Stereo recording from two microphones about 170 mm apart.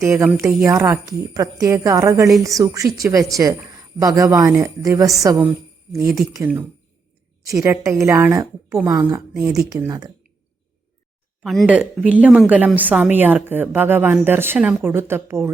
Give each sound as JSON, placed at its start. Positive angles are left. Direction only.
{"t": 0.0, "sound": "a woman's voice", "side_deg": -15}
{"t": 11.4, "sound": "speech", "side_deg": -5}